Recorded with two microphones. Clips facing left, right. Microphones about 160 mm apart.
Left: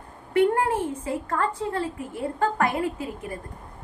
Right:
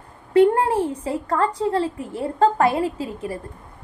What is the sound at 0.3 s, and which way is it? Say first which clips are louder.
A woman's voice: right 5 dB; 30° right (ahead or behind).